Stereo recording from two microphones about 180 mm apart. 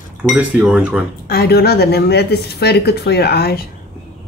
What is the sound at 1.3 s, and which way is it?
A woman's voice, 60° left (ahead or behind).